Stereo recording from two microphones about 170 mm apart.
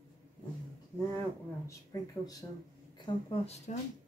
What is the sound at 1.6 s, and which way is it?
Speech, 20° left (ahead or behind).